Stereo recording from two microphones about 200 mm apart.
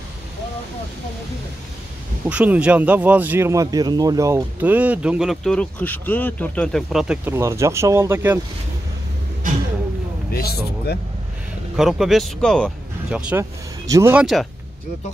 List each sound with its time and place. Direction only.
2.2 s speech: 5° right (ahead or behind)
10.3 s speech: 50° left (ahead or behind)
11.7 s speech: centre (ahead or behind)
13.3 s speech: 15° right (ahead or behind)
14.2 s speech: centre (ahead or behind)